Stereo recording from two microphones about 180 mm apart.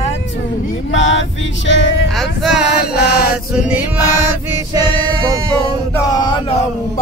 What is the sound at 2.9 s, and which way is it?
Chant, 60° left (ahead or behind).